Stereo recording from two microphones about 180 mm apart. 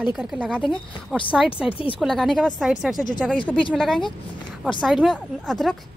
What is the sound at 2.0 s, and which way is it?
A woman's voice, centre (ahead or behind).